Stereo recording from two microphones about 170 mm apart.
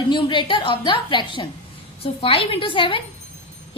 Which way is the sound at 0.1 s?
25° left (ahead or behind).